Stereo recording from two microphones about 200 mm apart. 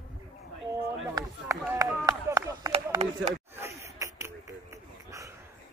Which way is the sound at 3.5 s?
15° right (ahead or behind).